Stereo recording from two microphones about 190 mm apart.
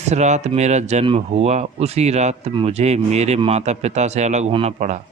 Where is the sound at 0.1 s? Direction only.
35° right (ahead or behind).